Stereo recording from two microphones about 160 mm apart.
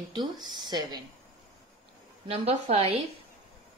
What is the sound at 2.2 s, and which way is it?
Speech, 40° right (ahead or behind).